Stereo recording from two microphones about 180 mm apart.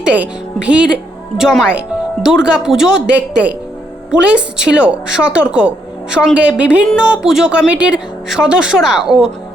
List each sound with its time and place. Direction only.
0.0 s a woman's voice: 5° right (ahead or behind)